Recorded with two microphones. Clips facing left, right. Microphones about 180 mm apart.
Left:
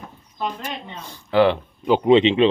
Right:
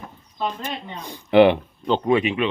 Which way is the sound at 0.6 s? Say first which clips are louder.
Right 1 dB; 15° right (ahead or behind).